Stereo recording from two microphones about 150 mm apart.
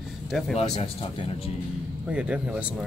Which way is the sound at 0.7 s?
40° left (ahead or behind).